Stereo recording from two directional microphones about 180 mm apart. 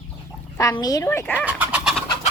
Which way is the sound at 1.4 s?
10° right (ahead or behind).